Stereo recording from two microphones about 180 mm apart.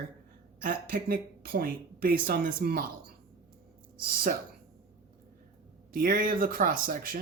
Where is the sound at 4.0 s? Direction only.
55° right (ahead or behind).